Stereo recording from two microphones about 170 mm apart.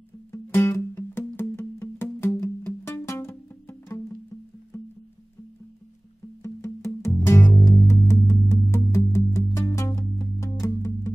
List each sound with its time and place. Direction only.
0.3 s music: 15° left (ahead or behind)
6.4 s music: 15° left (ahead or behind)